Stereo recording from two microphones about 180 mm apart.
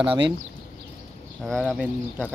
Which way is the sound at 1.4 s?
Centre (ahead or behind).